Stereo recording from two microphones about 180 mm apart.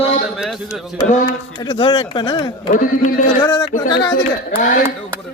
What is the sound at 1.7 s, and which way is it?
Speech, 30° left (ahead or behind).